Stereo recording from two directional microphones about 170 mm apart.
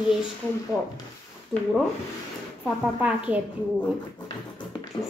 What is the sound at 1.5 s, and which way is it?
Speech, 5° right (ahead or behind).